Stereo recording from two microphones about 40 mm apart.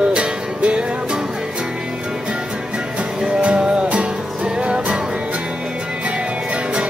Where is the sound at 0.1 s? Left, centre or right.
Right.